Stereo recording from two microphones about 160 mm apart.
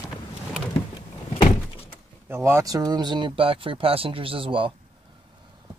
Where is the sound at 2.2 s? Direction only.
15° right (ahead or behind); by 4.7 s 30° right (ahead or behind).